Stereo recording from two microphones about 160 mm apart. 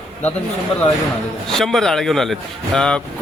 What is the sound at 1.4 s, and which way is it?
Speech, centre (ahead or behind).